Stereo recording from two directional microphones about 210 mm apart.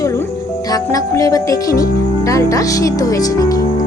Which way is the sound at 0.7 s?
15° left (ahead or behind).